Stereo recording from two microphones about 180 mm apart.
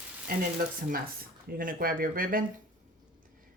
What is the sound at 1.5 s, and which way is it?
Speech, 50° right (ahead or behind).